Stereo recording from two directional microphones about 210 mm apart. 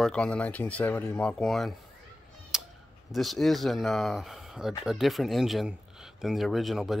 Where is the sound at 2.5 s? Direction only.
Centre (ahead or behind).